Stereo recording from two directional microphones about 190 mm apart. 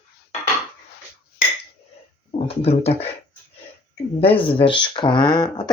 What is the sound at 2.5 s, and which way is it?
Speech, 30° left (ahead or behind).